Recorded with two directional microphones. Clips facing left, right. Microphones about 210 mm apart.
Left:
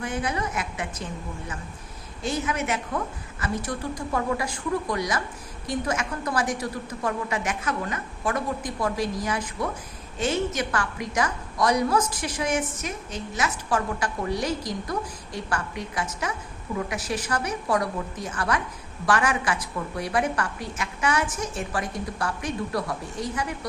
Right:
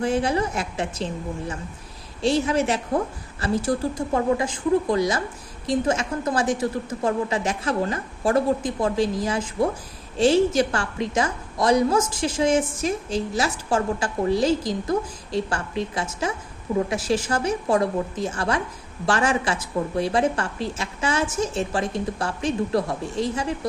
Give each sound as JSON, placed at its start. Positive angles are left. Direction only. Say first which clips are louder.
{"t": 0.0, "sound": "a woman's voice", "louder": "right 7 dB", "side_deg": -30}